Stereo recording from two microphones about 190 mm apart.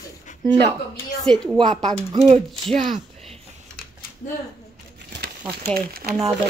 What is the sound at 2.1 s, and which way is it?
Speech, 30° right (ahead or behind).